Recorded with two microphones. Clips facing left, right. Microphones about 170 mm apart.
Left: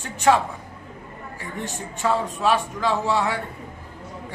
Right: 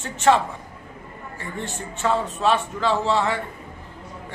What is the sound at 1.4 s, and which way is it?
A man's voice, 15° left (ahead or behind).